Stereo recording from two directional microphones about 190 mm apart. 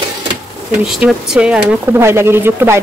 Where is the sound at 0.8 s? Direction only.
5° right (ahead or behind).